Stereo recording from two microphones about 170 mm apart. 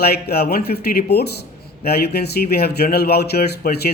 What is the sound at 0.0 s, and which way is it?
Speech, 70° left (ahead or behind).